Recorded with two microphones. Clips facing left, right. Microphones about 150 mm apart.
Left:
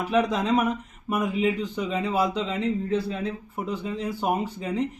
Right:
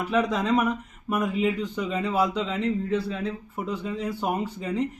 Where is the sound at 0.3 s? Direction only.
15° left (ahead or behind).